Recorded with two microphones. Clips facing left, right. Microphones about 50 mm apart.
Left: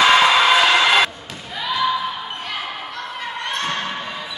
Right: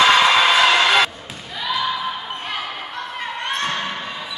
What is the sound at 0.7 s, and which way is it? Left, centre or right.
Music, centre.